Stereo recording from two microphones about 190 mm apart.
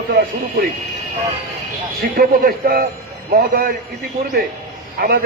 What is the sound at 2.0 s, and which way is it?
A man's voice, 50° right (ahead or behind).